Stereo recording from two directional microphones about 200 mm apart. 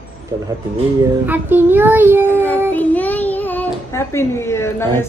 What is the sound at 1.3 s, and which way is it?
A child's voice, 10° right (ahead or behind).